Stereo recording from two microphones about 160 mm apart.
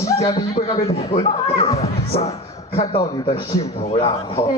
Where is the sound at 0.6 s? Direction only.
40° left (ahead or behind).